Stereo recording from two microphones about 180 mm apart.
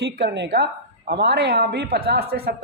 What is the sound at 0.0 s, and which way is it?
Speech, 65° right (ahead or behind).